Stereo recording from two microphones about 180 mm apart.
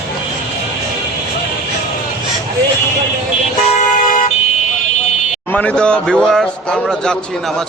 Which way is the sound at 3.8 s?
45° left (ahead or behind).